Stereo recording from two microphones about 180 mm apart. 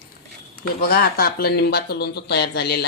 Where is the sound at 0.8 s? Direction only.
55° left (ahead or behind).